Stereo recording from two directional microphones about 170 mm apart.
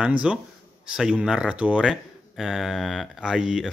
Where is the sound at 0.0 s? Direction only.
5° right (ahead or behind).